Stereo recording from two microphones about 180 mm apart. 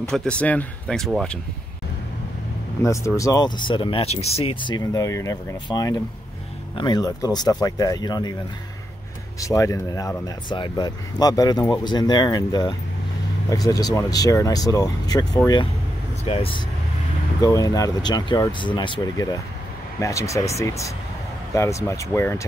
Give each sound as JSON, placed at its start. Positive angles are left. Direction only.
{"t": 0.0, "sound": "speech", "side_deg": 5}
{"t": 2.8, "sound": "speech", "side_deg": 15}
{"t": 4.6, "sound": "speech", "side_deg": 20}
{"t": 9.4, "sound": "speech", "side_deg": 20}
{"t": 17.4, "sound": "speech", "side_deg": 20}